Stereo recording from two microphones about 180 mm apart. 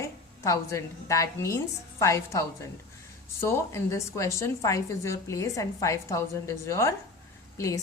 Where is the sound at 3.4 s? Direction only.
15° left (ahead or behind).